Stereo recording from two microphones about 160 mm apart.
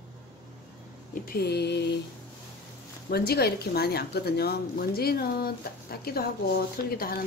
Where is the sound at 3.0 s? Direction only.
80° left.